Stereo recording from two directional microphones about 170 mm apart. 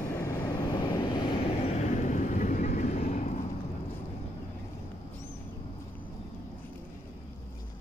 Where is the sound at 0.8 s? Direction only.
30° left (ahead or behind).